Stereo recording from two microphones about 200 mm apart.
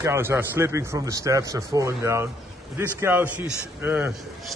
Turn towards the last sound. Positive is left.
turn(degrees=-5)  # may be behind; listen again after turning